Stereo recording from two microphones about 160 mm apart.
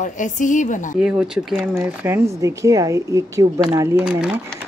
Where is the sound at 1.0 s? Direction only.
5° right (ahead or behind).